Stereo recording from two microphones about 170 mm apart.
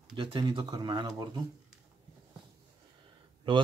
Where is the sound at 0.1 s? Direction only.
30° right (ahead or behind).